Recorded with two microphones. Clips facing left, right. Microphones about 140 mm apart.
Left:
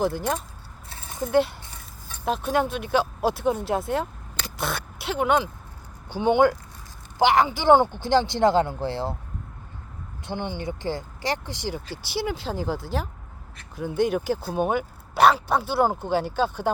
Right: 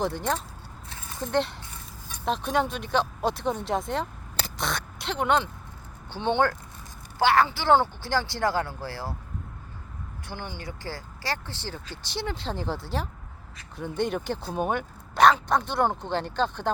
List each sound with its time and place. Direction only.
0.0 s speech: 5° left (ahead or behind); by 9.1 s 25° left (ahead or behind)
10.2 s speech: 20° left (ahead or behind)